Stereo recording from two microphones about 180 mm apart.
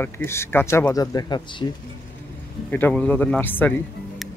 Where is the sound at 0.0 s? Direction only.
15° left (ahead or behind).